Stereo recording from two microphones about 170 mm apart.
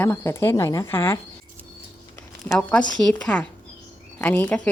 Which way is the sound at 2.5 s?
5° left (ahead or behind).